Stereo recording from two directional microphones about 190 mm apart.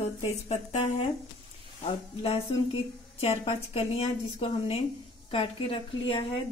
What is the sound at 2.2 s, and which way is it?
A woman's voice, 30° left (ahead or behind).